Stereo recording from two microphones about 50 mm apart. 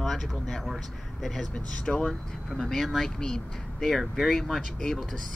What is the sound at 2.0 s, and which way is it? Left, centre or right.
Speech, centre.